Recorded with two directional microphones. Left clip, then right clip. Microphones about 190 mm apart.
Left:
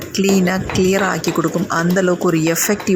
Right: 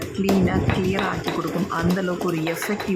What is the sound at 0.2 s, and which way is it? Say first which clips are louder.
Speech: left 5 dB; 25° left (ahead or behind).